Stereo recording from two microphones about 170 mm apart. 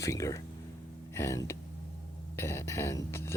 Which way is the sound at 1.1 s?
15° left (ahead or behind).